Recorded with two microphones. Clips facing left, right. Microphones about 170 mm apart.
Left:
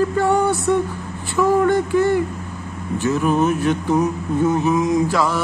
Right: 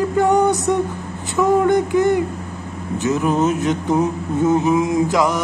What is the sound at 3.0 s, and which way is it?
Mantra, 20° right (ahead or behind).